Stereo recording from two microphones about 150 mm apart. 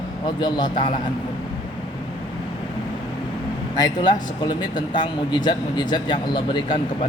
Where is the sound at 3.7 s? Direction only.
25° left (ahead or behind).